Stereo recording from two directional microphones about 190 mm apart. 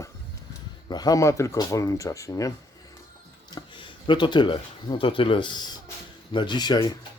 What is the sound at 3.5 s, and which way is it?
Speech, 25° left (ahead or behind).